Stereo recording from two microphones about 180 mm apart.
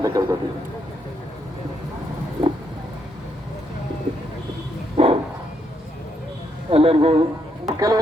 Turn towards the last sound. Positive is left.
turn(degrees=-20)  # may be behind; listen again after turning